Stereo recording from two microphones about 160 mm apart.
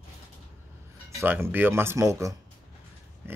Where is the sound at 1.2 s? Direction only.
15° right (ahead or behind).